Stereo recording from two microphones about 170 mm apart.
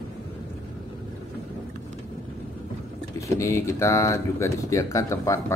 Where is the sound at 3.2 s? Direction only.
15° left (ahead or behind).